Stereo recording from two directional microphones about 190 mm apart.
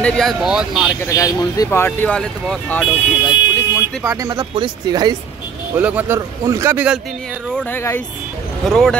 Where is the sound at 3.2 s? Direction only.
15° left (ahead or behind).